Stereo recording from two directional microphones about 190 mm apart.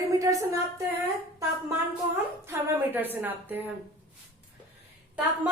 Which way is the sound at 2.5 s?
10° right (ahead or behind).